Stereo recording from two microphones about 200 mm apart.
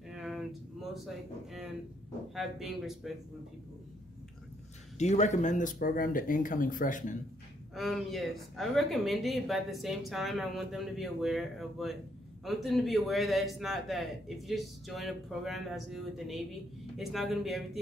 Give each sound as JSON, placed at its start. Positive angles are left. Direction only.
{"t": 0.1, "sound": "a sound", "side_deg": 0}
{"t": 2.3, "sound": "speech", "side_deg": 0}
{"t": 4.9, "sound": "speech", "side_deg": 35}
{"t": 7.7, "sound": "speech", "side_deg": 0}